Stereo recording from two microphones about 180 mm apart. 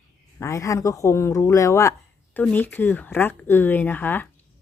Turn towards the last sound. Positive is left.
turn(degrees=10)  # may be behind; listen again after turning